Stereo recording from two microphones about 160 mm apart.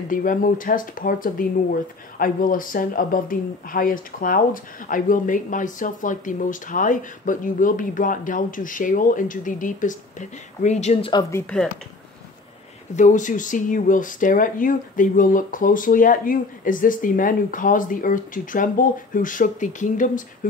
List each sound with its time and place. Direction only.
0.1 s speech: 55° left (ahead or behind)
11.1 s speech: 20° left (ahead or behind)
12.9 s speech: 50° left (ahead or behind)